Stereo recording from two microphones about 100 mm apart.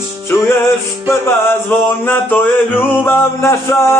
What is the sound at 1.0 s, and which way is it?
Music, 25° left (ahead or behind).